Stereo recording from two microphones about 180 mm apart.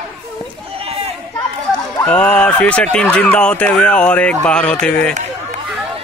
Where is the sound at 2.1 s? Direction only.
5° left (ahead or behind).